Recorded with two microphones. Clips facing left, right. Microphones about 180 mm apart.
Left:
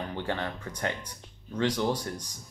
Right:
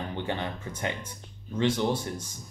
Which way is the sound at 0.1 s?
20° right (ahead or behind).